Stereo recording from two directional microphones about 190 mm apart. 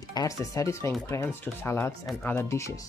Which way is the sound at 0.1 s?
20° left (ahead or behind).